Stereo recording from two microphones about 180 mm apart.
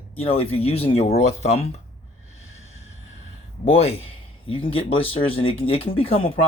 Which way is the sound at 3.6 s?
35° left (ahead or behind).